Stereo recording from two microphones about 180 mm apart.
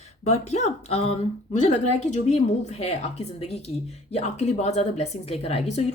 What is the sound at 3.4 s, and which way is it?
Speech, 35° left (ahead or behind).